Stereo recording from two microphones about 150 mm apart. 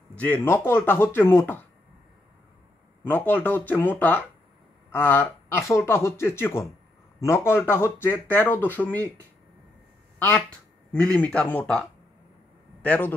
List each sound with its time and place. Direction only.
0.1 s speech: 10° left (ahead or behind)
3.0 s speech: 10° left (ahead or behind)
10.9 s speech: 10° left (ahead or behind)
12.8 s a man's voice: 10° left (ahead or behind)